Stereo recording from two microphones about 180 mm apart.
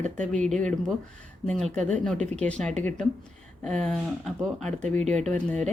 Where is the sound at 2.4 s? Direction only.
5° left (ahead or behind).